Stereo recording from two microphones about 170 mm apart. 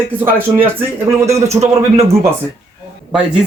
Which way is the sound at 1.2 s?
15° right (ahead or behind).